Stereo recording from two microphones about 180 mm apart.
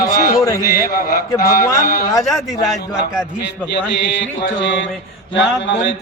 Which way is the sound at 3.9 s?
85° left.